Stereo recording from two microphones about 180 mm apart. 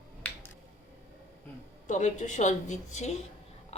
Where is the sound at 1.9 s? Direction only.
45° left (ahead or behind).